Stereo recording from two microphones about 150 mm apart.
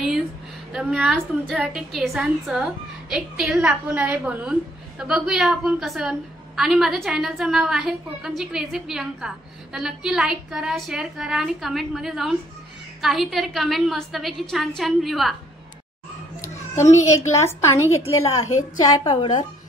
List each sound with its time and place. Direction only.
0.7 s a woman's voice: 5° right (ahead or behind)
16.7 s a woman's voice: 20° left (ahead or behind)